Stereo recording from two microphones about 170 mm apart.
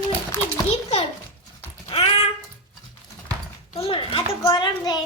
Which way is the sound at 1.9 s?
35° left (ahead or behind).